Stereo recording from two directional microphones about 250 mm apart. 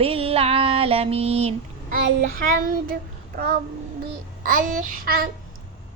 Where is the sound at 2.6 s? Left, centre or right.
Right.